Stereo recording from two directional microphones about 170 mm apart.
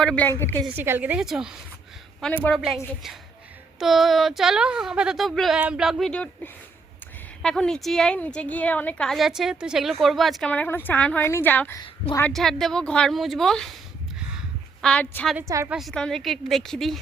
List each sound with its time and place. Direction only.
0.0 s a woman's voice: 5° left (ahead or behind)
0.8 s speech: 10° right (ahead or behind)
2.2 s a woman's voice: 10° left (ahead or behind)
3.8 s a woman's voice: centre (ahead or behind)
14.8 s a woman's voice: 5° left (ahead or behind)
15.4 s speech: 20° right (ahead or behind)
15.7 s a woman's voice: centre (ahead or behind)